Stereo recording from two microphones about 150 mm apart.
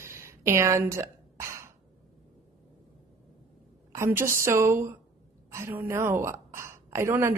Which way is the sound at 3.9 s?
15° right (ahead or behind).